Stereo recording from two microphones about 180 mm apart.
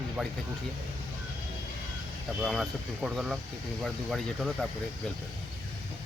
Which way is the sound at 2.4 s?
Centre (ahead or behind).